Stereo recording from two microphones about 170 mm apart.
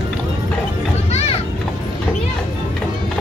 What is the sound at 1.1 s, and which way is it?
Children playing, 40° left (ahead or behind).